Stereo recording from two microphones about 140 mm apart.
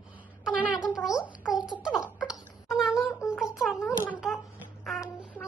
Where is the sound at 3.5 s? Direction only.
Centre (ahead or behind).